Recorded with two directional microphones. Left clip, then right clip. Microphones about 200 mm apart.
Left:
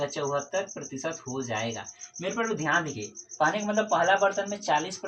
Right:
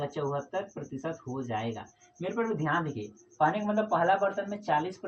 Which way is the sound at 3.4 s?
20° left (ahead or behind).